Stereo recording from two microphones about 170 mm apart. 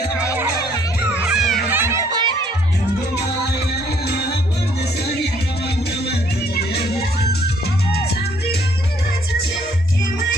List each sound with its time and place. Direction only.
1.1 s music: 5° right (ahead or behind)
1.8 s music: 15° right (ahead or behind)
4.1 s music: 75° left (ahead or behind)
6.0 s music: 65° left (ahead or behind)